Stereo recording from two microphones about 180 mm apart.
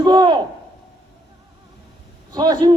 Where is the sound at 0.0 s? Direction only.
25° right (ahead or behind).